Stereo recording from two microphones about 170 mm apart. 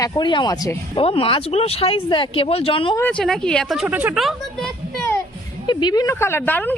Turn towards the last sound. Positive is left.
turn(degrees=10)  # may be behind; listen again after turning